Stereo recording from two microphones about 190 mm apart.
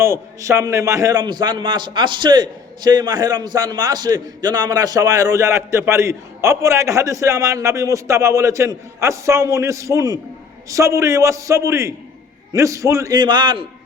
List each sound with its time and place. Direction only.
0.0 s a man's voice: 15° right (ahead or behind)